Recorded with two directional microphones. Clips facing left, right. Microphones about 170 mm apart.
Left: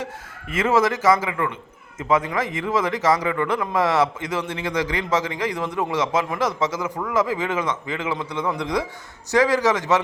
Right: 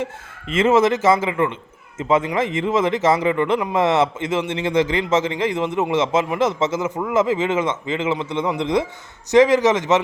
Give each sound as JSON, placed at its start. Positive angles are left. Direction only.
{"t": 0.0, "sound": "a man's voice", "side_deg": -25}